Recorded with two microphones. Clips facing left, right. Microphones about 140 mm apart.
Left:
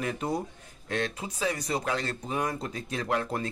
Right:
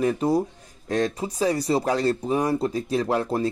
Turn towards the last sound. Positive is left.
turn(degrees=-35)  # may be behind; listen again after turning